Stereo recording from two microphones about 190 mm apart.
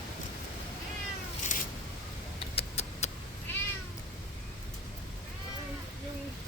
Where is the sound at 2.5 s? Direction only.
35° left (ahead or behind).